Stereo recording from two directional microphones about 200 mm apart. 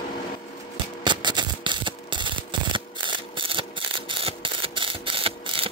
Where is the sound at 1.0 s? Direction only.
20° right (ahead or behind).